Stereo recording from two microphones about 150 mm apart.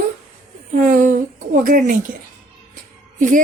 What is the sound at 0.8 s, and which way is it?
A woman's voice, 60° right (ahead or behind).